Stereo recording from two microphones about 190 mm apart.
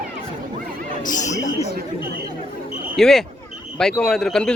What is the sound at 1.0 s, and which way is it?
Chatter, 40° left (ahead or behind).